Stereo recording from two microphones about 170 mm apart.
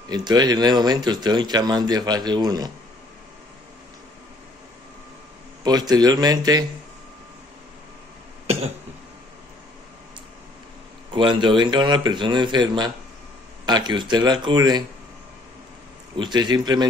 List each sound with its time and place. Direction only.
0.1 s speech: 25° right (ahead or behind)
5.6 s speech: 25° right (ahead or behind)
11.1 s speech: 30° right (ahead or behind)
16.2 s speech: 25° right (ahead or behind)